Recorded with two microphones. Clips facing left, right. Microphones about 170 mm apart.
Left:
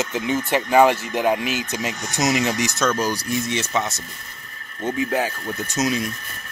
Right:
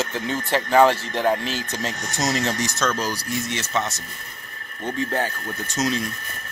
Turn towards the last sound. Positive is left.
turn(degrees=10)  # may be behind; listen again after turning